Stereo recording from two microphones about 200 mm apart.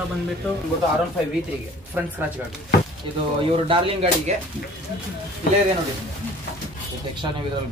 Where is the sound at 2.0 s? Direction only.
10° right (ahead or behind).